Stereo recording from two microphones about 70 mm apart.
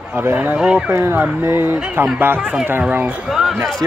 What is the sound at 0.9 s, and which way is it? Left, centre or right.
Speech, right.